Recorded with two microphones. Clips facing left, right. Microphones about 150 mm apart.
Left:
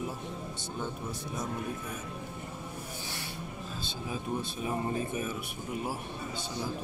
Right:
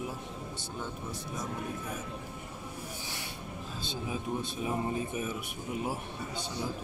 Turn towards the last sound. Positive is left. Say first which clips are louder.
# left 1 dB
turn(degrees=-15)  # may be behind; listen again after turning